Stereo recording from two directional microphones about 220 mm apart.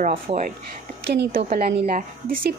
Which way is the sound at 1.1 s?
45° right (ahead or behind).